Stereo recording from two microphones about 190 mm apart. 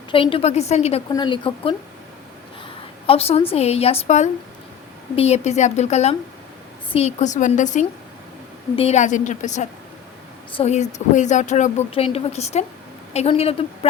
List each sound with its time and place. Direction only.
0.1 s speech: 30° left (ahead or behind)
1.1 s speech: 25° left (ahead or behind)
3.1 s speech: 30° left (ahead or behind)